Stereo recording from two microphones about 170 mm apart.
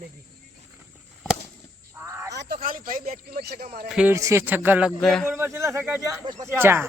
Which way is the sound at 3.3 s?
70° right (ahead or behind).